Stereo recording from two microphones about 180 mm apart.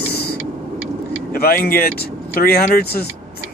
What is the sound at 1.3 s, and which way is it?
Speech, 55° left (ahead or behind).